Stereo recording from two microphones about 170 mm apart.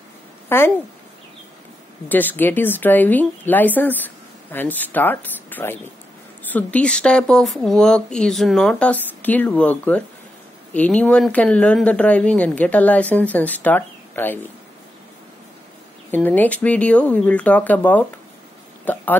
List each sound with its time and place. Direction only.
0.5 s speech: 15° left (ahead or behind)
2.0 s speech: 10° left (ahead or behind)
16.1 s speech: 10° left (ahead or behind)